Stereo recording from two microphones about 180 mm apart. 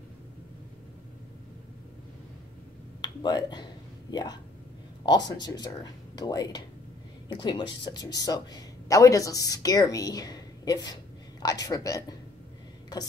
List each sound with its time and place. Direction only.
3.0 s finger snapping: 25° left (ahead or behind)
5.0 s speech: 20° left (ahead or behind)